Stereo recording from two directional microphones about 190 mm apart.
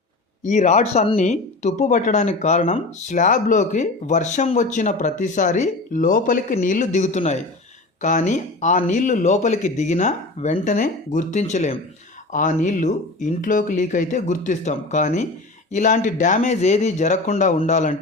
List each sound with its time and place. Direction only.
0.4 s speech: 40° left (ahead or behind)